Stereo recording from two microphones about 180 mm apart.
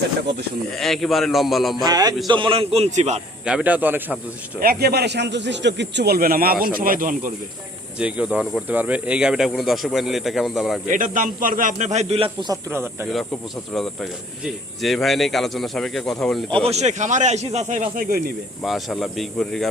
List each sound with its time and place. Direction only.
0.8 s speech: centre (ahead or behind)
1.8 s speech: 20° right (ahead or behind); by 3.2 s 35° right (ahead or behind)
3.4 s speech: 5° right (ahead or behind)
4.6 s speech: 60° right (ahead or behind)
7.9 s speech: 5° right (ahead or behind)
10.8 s speech: 45° right (ahead or behind); by 12.5 s 30° right (ahead or behind)
12.7 s speech: 15° right (ahead or behind)
13.1 s speech: centre (ahead or behind)
16.6 s speech: 40° right (ahead or behind)
18.6 s speech: centre (ahead or behind)